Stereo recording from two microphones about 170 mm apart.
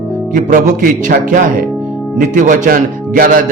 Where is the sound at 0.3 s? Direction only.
50° right (ahead or behind).